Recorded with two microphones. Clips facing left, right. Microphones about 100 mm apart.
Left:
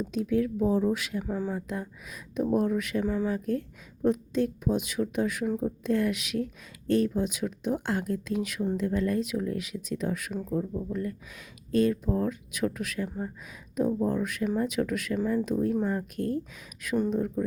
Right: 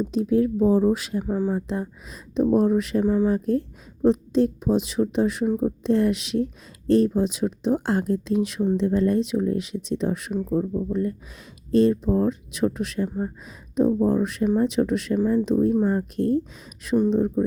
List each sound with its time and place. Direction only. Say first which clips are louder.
0.0 s speech: right 6 dB; 30° right (ahead or behind)
1.2 s speech: right 7 dB; 15° right (ahead or behind)
1.6 s speech: right 6 dB; 30° right (ahead or behind)
15.2 s speech: right 6 dB; 15° right (ahead or behind)
15.4 s speech: right 7 dB; 30° right (ahead or behind)